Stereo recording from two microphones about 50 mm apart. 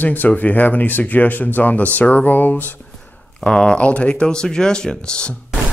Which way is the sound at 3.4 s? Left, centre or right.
Centre.